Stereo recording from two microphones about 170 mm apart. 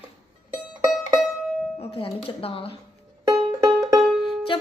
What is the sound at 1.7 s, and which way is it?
A woman's voice, 35° left (ahead or behind).